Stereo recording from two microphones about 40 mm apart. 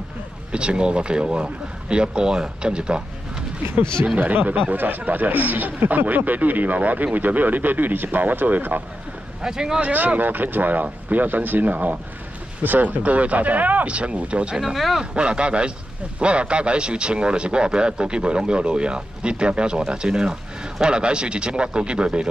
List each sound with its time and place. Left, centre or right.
0.5 s speech: right
4.2 s speech: right
9.4 s speech: centre
9.8 s speech: right
14.6 s speech: centre
15.0 s speech: right